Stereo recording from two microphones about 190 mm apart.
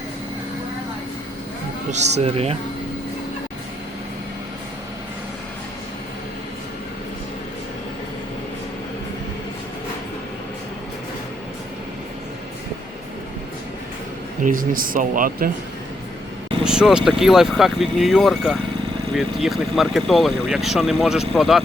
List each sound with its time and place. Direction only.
1.9 s speech: 35° right (ahead or behind)
14.4 s speech: 45° right (ahead or behind)
16.6 s speech: 5° right (ahead or behind)